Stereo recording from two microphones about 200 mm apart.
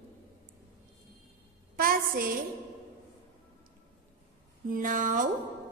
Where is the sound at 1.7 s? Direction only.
45° right (ahead or behind).